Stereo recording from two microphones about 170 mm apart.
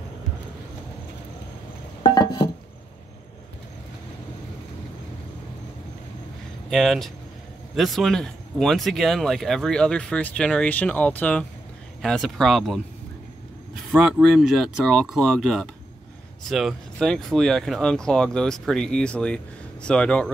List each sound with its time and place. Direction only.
2.0 s a sound: 25° left (ahead or behind)
6.7 s speech: centre (ahead or behind)
13.9 s speech: 5° right (ahead or behind)